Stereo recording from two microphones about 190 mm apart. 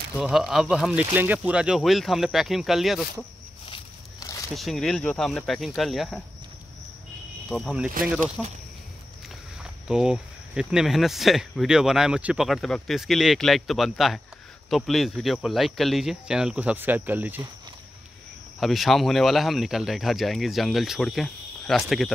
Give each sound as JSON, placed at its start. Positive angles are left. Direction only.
{"t": 0.2, "sound": "speech", "side_deg": 0}
{"t": 3.6, "sound": "walk", "side_deg": 25}
{"t": 4.6, "sound": "speech", "side_deg": 0}
{"t": 7.4, "sound": "speech", "side_deg": 0}
{"t": 9.8, "sound": "speech", "side_deg": -5}
{"t": 18.6, "sound": "speech", "side_deg": 0}